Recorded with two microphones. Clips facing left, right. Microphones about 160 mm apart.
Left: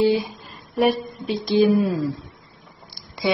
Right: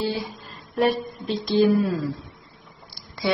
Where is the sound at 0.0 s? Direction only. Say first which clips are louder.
Left 8 dB; 15° left (ahead or behind).